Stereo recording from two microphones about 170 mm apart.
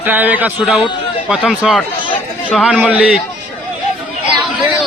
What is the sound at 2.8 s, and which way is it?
Speech, 10° right (ahead or behind).